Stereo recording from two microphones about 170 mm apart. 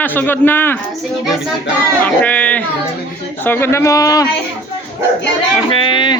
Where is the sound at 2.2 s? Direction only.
10° left (ahead or behind).